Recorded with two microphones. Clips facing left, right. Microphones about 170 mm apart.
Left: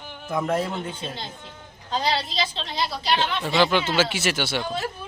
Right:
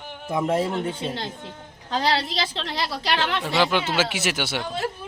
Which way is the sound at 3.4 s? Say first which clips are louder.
Left 2 dB; 10° right (ahead or behind).